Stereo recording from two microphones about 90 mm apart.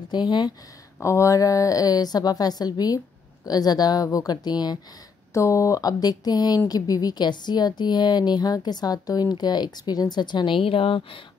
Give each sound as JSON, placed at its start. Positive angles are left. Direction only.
{"t": 0.1, "sound": "speech", "side_deg": 55}
{"t": 1.0, "sound": "a woman's voice", "side_deg": 35}
{"t": 5.3, "sound": "a woman's voice", "side_deg": 35}